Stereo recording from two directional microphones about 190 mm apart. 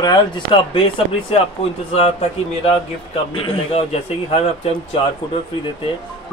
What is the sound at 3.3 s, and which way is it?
A man's voice, 30° left (ahead or behind).